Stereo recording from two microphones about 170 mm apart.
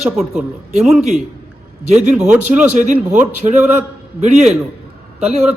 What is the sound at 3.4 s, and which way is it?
Speech, 30° right (ahead or behind).